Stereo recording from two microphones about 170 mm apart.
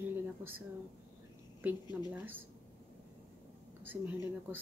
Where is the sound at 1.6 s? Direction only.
10° right (ahead or behind).